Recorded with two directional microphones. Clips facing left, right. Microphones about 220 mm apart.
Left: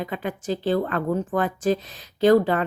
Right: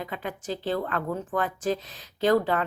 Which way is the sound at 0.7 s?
30° left (ahead or behind).